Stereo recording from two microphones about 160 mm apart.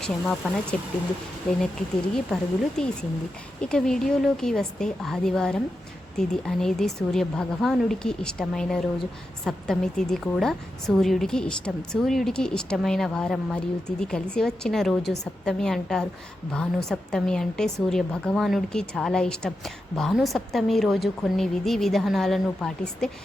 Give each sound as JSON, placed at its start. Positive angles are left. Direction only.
{"t": 0.0, "sound": "a woman's voice", "side_deg": 5}
{"t": 2.1, "sound": "a woman's voice", "side_deg": 5}